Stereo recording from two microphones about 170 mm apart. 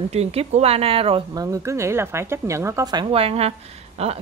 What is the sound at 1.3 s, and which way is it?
A woman's voice, 20° right (ahead or behind).